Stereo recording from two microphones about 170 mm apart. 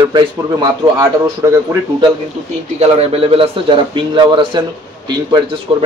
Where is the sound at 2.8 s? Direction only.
35° right (ahead or behind).